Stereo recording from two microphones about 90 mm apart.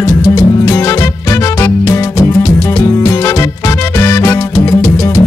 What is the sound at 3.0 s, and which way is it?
Music, 40° left (ahead or behind).